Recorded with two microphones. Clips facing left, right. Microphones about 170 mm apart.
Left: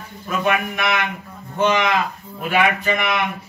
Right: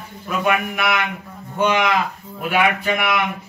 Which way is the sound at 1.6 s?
10° right (ahead or behind).